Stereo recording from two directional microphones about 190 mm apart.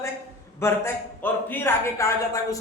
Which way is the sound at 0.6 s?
10° left (ahead or behind).